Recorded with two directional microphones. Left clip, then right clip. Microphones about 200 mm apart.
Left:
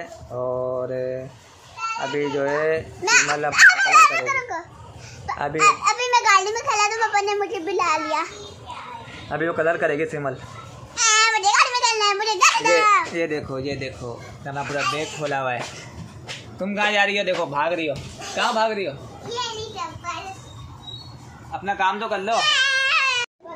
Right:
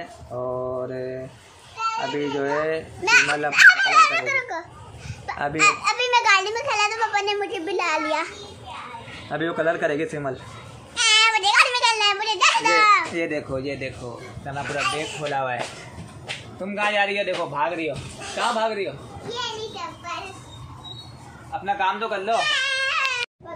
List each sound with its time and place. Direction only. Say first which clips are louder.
0.3 s a man's voice: left 2 dB; centre (ahead or behind)
3.1 s a child's voice: right 1 dB; 10° right (ahead or behind)
9.3 s a man's voice: left 2 dB; 5° right (ahead or behind)
11.0 s a sound: even; 10° right (ahead or behind)
13.1 s speech: left 1 dB; 10° left (ahead or behind)
13.6 s speech: left 1 dB; 25° left (ahead or behind)
16.6 s a man's voice: left 2 dB; 45° left (ahead or behind)
19.2 s a sound: left 1 dB; 5° left (ahead or behind)
21.5 s cat: left 1 dB; 35° left (ahead or behind)